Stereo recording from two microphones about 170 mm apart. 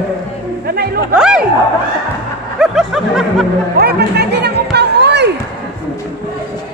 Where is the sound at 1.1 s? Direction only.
5° right (ahead or behind).